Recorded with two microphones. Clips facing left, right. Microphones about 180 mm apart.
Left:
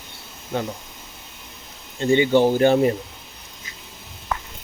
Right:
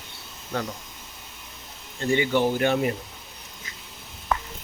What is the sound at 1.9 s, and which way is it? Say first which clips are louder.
Speech: left 6 dB; 25° left (ahead or behind).